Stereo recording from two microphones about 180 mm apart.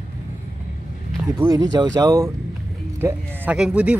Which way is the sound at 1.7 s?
20° right (ahead or behind).